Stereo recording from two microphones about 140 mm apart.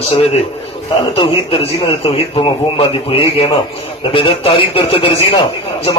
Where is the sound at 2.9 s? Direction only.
40° left (ahead or behind).